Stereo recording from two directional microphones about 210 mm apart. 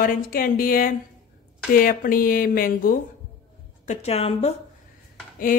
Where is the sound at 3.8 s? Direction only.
30° left (ahead or behind).